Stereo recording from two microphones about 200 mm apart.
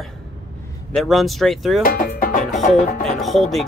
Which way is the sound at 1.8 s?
45° left (ahead or behind).